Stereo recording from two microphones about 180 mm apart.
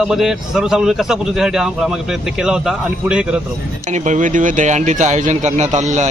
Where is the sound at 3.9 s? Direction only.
45° right (ahead or behind).